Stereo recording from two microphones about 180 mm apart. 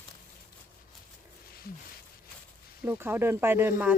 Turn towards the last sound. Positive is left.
turn(degrees=-10)  # may be behind; listen again after turning